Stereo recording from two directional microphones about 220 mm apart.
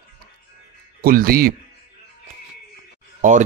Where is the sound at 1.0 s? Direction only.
40° right (ahead or behind).